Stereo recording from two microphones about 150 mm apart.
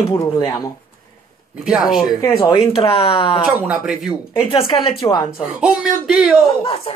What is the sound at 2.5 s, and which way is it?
Speech, 35° left (ahead or behind).